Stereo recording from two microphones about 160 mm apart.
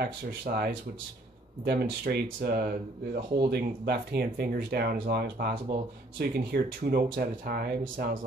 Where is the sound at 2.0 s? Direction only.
75° right (ahead or behind).